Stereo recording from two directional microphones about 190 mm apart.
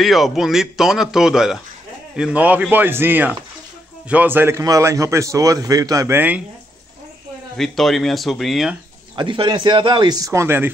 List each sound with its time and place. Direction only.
0.0 s a man's voice: centre (ahead or behind)
7.5 s a man's voice: centre (ahead or behind)
9.1 s speech: 25° right (ahead or behind)